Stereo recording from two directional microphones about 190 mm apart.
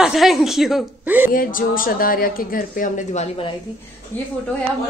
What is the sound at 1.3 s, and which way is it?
A woman's voice, 45° left (ahead or behind).